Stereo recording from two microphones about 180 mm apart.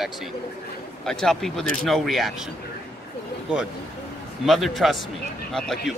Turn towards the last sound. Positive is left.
turn(degrees=0)  # may be behind; listen again after turning